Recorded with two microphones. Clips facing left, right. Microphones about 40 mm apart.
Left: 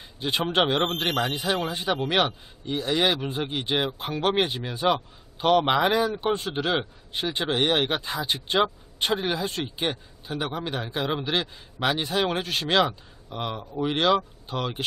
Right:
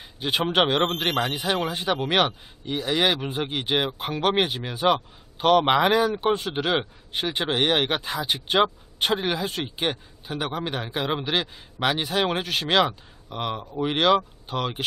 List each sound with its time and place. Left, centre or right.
0.2 s speech: centre